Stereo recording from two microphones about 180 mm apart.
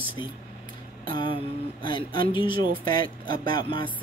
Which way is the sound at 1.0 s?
25° left (ahead or behind).